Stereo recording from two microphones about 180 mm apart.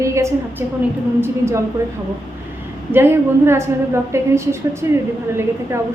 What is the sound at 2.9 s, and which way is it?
A woman's voice, 10° right (ahead or behind).